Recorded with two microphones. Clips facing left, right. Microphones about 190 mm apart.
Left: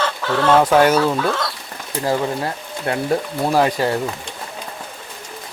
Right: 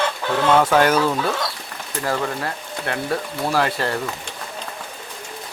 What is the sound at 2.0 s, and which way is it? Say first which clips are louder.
Speech: left 4 dB; 20° left (ahead or behind).